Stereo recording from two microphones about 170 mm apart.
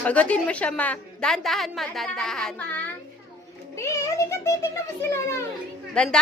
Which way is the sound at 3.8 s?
20° left (ahead or behind).